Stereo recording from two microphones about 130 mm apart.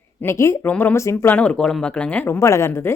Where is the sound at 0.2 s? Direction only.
20° left (ahead or behind).